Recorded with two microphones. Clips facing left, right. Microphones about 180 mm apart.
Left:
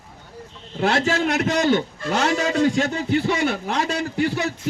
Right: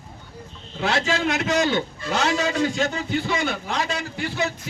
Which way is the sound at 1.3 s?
50° left (ahead or behind).